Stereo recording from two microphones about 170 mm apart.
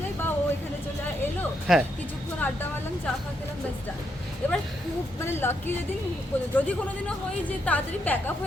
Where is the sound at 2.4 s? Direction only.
10° left (ahead or behind).